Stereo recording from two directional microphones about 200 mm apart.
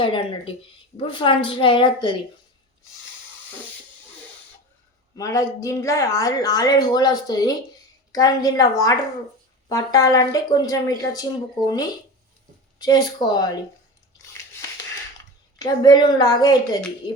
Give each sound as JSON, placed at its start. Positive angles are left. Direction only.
{"t": 0.0, "sound": "speech", "side_deg": 25}
{"t": 5.1, "sound": "speech", "side_deg": 15}
{"t": 15.5, "sound": "speech", "side_deg": 20}